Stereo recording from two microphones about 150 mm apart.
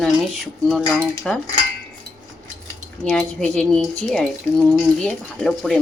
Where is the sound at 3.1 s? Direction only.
5° left (ahead or behind).